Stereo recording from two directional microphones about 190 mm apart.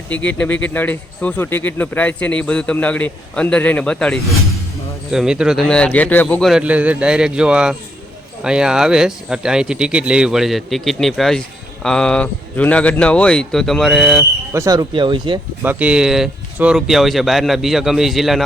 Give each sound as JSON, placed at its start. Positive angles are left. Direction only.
{"t": 0.1, "sound": "speech", "side_deg": 5}
{"t": 14.5, "sound": "speech", "side_deg": -15}
{"t": 15.6, "sound": "speech", "side_deg": -10}